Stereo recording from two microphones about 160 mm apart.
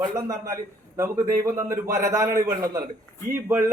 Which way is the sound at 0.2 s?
20° right (ahead or behind).